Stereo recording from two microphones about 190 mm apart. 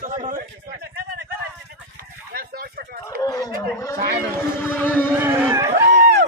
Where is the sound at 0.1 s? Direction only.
40° right (ahead or behind).